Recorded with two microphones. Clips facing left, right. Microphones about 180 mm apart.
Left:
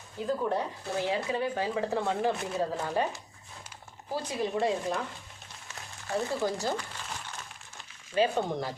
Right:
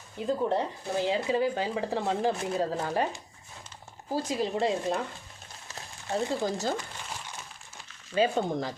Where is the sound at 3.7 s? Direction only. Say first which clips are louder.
Right 1 dB; 10° left (ahead or behind).